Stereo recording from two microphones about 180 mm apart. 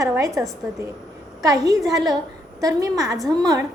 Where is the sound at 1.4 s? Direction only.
20° right (ahead or behind).